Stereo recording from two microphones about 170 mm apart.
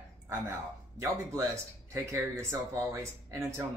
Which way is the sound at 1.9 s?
15° right (ahead or behind).